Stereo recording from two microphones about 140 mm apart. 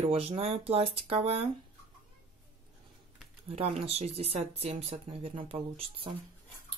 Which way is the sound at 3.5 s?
50° right (ahead or behind).